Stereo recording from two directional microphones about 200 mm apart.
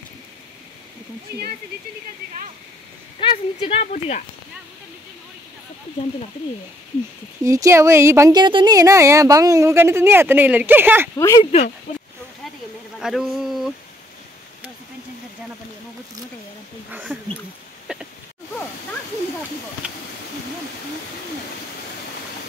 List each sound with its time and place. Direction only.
3.2 s speech: 25° left (ahead or behind)
7.4 s a woman's voice: 15° right (ahead or behind)
11.1 s speech: 15° left (ahead or behind)
13.0 s speech: centre (ahead or behind)
16.9 s speech: centre (ahead or behind)
17.9 s a sound: 5° right (ahead or behind)